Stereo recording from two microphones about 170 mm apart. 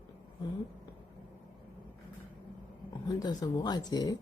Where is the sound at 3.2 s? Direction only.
25° left (ahead or behind).